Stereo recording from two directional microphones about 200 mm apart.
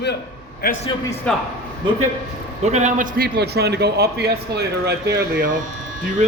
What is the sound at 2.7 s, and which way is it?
A man's voice, 35° right (ahead or behind).